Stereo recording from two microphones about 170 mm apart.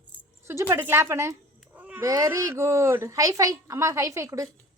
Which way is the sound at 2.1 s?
20° right (ahead or behind).